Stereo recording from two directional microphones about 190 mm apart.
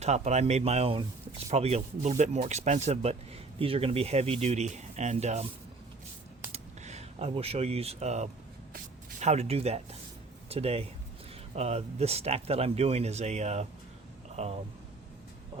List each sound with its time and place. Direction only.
0.0 s speech: 35° right (ahead or behind)
6.5 s a sound: 35° right (ahead or behind)
9.2 s speech: 35° right (ahead or behind)